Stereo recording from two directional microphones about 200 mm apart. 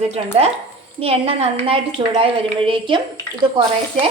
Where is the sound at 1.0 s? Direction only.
30° right (ahead or behind).